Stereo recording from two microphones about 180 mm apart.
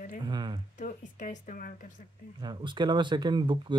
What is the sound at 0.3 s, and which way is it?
Speech, 25° right (ahead or behind).